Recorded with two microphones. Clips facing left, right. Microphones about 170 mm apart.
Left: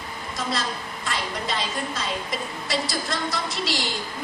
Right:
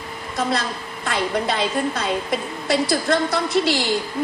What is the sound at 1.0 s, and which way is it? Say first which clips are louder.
A woman's voice: right 8 dB; 60° right (ahead or behind).